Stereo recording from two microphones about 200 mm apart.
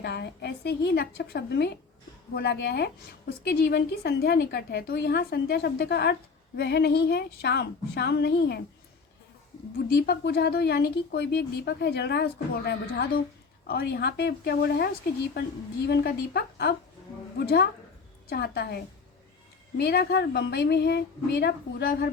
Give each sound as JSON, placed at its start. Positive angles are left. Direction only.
{"t": 0.0, "sound": "a woman's voice", "side_deg": 55}
{"t": 9.9, "sound": "a woman's voice", "side_deg": 55}
{"t": 15.9, "sound": "a woman's voice", "side_deg": 50}